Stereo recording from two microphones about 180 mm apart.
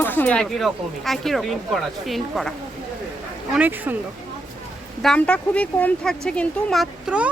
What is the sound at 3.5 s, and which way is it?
Speech, 10° right (ahead or behind).